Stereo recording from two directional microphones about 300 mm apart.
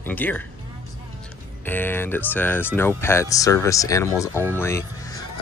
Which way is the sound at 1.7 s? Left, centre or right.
Centre.